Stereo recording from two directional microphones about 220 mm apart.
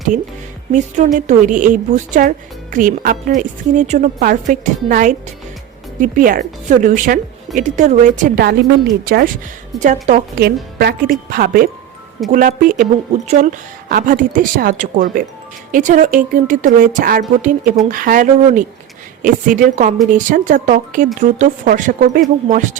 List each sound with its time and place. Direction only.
0.7 s speech: 35° right (ahead or behind)
9.8 s speech: 35° right (ahead or behind)
10.4 s speech: 45° right (ahead or behind)